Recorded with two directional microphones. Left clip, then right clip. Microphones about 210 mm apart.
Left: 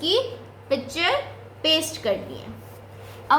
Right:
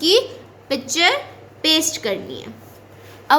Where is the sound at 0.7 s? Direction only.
55° right (ahead or behind).